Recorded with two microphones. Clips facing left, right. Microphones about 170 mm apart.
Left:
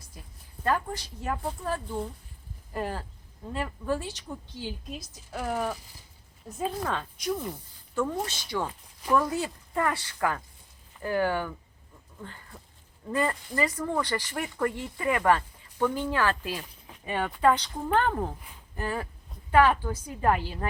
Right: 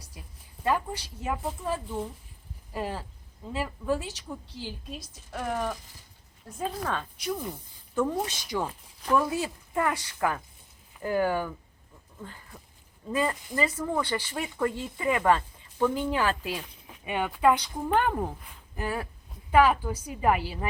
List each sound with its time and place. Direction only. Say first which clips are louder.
0.6 s a woman's voice: even; 5° right (ahead or behind)
7.9 s speech: right 2 dB; 10° right (ahead or behind)